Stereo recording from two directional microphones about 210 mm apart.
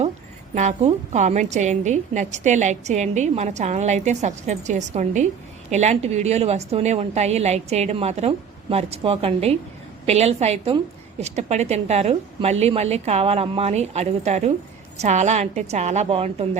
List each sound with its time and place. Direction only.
0.5 s a woman's voice: 35° right (ahead or behind)